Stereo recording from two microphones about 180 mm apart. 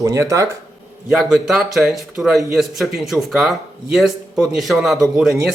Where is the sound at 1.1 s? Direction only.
Centre (ahead or behind).